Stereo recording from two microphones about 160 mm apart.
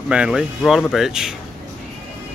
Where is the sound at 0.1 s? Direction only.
5° right (ahead or behind).